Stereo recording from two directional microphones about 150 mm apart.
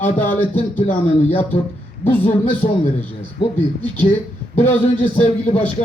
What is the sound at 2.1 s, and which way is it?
Speech, 10° left (ahead or behind).